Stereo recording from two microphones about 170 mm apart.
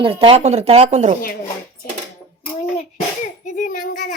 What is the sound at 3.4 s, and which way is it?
Child singing, 50° left (ahead or behind).